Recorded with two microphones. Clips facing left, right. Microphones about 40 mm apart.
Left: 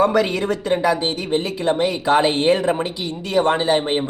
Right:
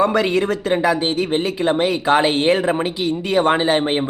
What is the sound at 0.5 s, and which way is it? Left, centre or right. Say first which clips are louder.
Speech: right 1 dB; centre.